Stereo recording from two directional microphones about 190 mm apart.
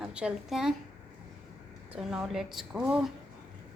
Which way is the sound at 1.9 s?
5° right (ahead or behind).